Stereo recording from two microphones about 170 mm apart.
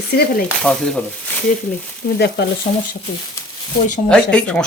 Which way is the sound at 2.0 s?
65° left (ahead or behind).